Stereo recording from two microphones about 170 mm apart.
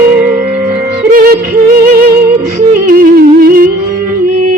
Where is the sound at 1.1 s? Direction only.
55° right (ahead or behind).